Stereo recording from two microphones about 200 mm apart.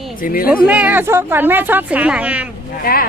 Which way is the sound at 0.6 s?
5° right (ahead or behind).